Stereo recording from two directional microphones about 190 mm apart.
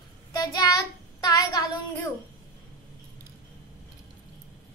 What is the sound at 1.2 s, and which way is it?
Child singing, 20° left (ahead or behind).